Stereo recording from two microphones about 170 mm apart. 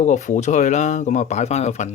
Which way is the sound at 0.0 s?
45° left (ahead or behind).